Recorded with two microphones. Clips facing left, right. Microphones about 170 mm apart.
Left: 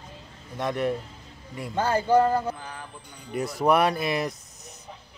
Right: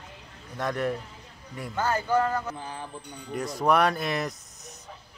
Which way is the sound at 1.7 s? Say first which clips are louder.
Left 4 dB; 30° left (ahead or behind).